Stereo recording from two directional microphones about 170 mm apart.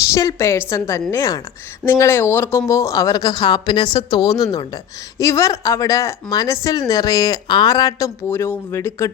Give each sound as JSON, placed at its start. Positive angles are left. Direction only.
{"t": 0.1, "sound": "a woman's voice", "side_deg": 20}